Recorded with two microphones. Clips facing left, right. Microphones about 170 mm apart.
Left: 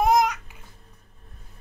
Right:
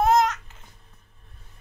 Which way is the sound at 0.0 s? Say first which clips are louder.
Even; 10° left (ahead or behind).